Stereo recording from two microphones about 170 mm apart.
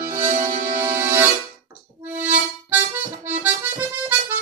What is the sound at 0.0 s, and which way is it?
Music, 15° right (ahead or behind).